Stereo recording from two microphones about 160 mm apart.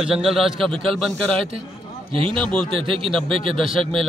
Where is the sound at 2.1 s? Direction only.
35° right (ahead or behind).